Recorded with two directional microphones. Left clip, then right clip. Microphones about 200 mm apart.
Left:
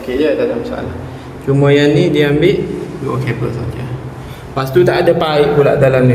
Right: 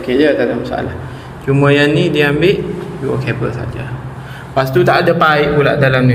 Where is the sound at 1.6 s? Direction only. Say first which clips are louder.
Left 1 dB; 15° right (ahead or behind).